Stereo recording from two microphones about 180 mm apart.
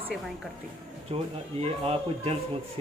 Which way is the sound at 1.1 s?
30° right (ahead or behind).